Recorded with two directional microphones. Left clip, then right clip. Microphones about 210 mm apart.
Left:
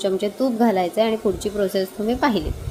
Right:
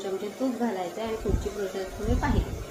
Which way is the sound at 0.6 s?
55° left (ahead or behind).